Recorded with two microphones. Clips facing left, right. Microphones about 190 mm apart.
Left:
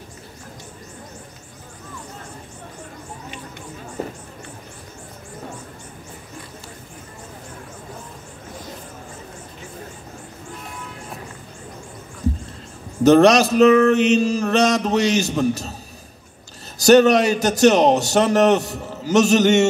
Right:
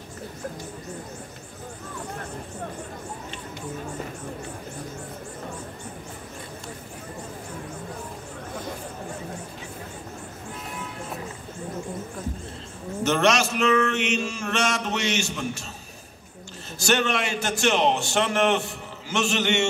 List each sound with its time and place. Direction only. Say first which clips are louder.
13.0 s a man's voice: left 10 dB; 35° left (ahead or behind)
16.7 s a man's voice: left 12 dB; 40° left (ahead or behind)